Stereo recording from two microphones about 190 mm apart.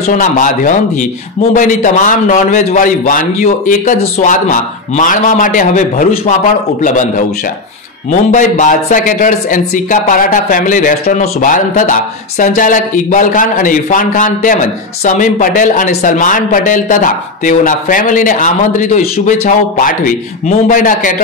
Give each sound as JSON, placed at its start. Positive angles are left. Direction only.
{"t": 0.1, "sound": "speech", "side_deg": 40}